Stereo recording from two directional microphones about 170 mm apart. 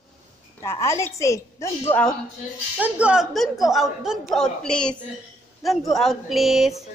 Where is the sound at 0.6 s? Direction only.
15° left (ahead or behind).